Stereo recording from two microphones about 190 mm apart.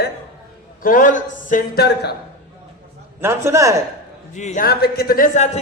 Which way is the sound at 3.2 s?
15° right (ahead or behind).